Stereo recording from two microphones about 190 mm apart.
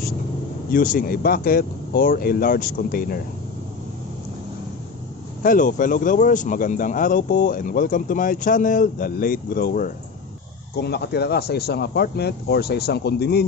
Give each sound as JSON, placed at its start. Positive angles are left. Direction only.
{"t": 0.7, "sound": "speech", "side_deg": 50}
{"t": 5.4, "sound": "speech", "side_deg": 45}
{"t": 10.8, "sound": "speech", "side_deg": 60}